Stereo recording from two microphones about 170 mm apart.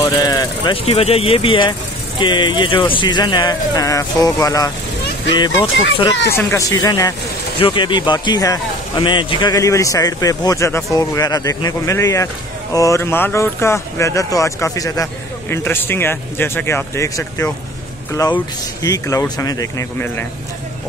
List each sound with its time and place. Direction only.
0.0 s speech: 20° left (ahead or behind)
0.8 s speech: 35° left (ahead or behind)
6.3 s speech: 20° left (ahead or behind)